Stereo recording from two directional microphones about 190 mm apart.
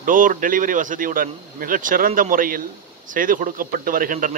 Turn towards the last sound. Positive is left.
turn(degrees=-45)  # may be behind; listen again after turning